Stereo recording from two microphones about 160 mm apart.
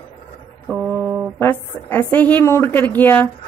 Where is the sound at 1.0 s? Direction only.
5° right (ahead or behind).